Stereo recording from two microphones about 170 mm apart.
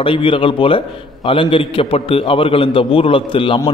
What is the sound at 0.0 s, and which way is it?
A man's voice, 30° left (ahead or behind).